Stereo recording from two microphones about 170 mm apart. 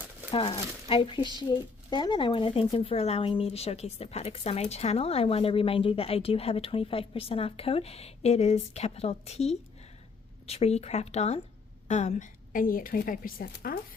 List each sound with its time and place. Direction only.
0.3 s a woman's voice: 35° left (ahead or behind); by 13.7 s 60° left (ahead or behind)